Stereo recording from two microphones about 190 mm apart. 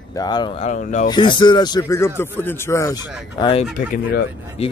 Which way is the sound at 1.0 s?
25° left (ahead or behind).